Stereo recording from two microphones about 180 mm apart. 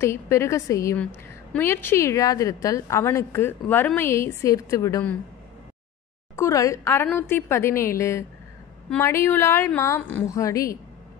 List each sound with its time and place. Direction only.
0.0 s a woman's voice: 15° left (ahead or behind)
6.3 s a woman's voice: 15° left (ahead or behind)